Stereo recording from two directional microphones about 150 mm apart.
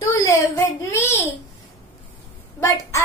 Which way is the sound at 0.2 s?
15° left (ahead or behind).